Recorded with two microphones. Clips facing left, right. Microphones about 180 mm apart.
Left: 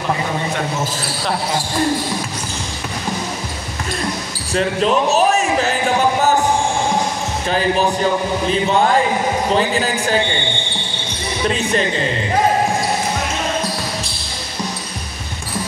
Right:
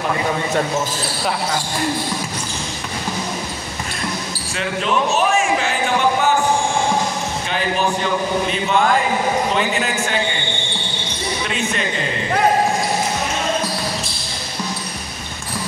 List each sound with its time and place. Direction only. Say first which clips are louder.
4.6 s a man's voice: left 4 dB; 35° left (ahead or behind)
7.4 s a man's voice: left 5 dB; 40° left (ahead or behind)
11.4 s a man's voice: left 8 dB; 35° left (ahead or behind)